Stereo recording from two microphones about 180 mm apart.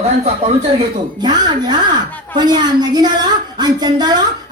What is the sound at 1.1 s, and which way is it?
A woman's voice, 25° right (ahead or behind).